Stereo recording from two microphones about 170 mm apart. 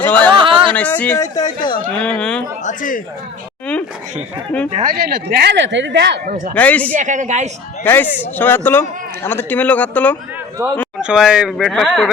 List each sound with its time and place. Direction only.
0.0 s a sound: 10° left (ahead or behind)
0.3 s a sound: 30° right (ahead or behind)
0.7 s a man's voice: 10° left (ahead or behind)
2.0 s speech: 5° left (ahead or behind)
2.6 s a man's voice: 50° left (ahead or behind)
4.7 s speech: 55° right (ahead or behind); by 6.1 s 90° right
6.2 s speech: 55° right (ahead or behind)
6.5 s a man's voice: 10° left (ahead or behind)
6.9 s speech: 45° right (ahead or behind)
7.9 s a man's voice: 10° left (ahead or behind)
10.6 s a man's voice: 15° right (ahead or behind)
11.0 s speech: 5° right (ahead or behind)